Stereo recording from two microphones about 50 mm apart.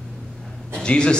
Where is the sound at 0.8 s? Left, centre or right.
Centre.